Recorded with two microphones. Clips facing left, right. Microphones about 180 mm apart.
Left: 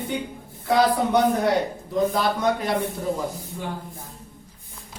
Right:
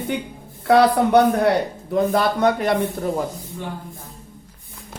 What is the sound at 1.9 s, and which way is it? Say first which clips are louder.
Speech: right 4 dB; 60° right (ahead or behind).